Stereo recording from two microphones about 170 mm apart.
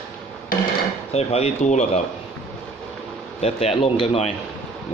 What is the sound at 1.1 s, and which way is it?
Speech, 40° left (ahead or behind).